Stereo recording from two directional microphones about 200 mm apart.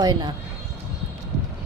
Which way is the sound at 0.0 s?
20° right (ahead or behind).